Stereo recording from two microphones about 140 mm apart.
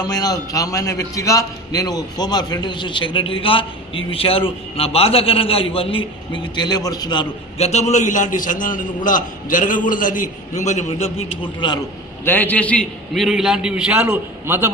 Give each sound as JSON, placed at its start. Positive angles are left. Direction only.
{"t": 0.0, "sound": "a man's voice", "side_deg": 25}
{"t": 7.5, "sound": "a man's voice", "side_deg": 50}
{"t": 12.3, "sound": "a man's voice", "side_deg": 10}